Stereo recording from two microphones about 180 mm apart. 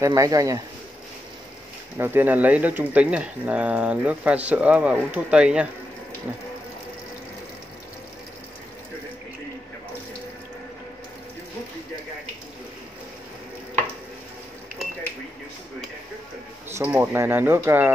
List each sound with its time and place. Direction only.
0.0 s speech: 20° right (ahead or behind)
2.0 s speech: 10° right (ahead or behind)
16.7 s speech: 10° right (ahead or behind)